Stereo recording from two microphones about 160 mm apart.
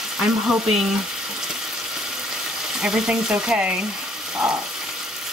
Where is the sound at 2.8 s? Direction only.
5° right (ahead or behind).